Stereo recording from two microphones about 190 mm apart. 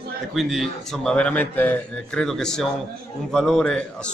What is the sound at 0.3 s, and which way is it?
Speech, centre (ahead or behind).